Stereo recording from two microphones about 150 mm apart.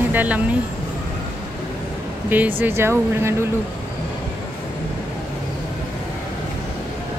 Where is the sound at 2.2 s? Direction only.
10° right (ahead or behind).